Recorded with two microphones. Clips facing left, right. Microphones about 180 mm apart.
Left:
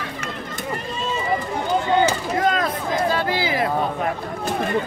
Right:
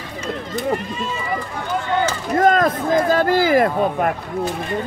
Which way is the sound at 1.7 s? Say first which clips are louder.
Left 2 dB; 20° left (ahead or behind).